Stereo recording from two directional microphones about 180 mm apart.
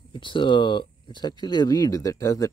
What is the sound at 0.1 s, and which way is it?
Speech, 25° left (ahead or behind).